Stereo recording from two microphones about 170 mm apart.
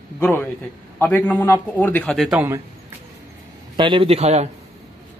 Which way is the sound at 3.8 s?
30° right (ahead or behind).